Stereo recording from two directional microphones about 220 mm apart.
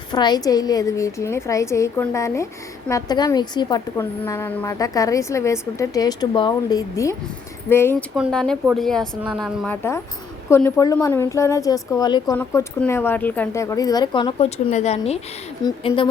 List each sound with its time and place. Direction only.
0.1 s a woman's voice: 20° left (ahead or behind)
8.1 s a woman's voice: centre (ahead or behind)
9.6 s a woman's voice: 10° left (ahead or behind)